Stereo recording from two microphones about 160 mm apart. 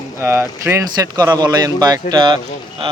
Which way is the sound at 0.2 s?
15° right (ahead or behind).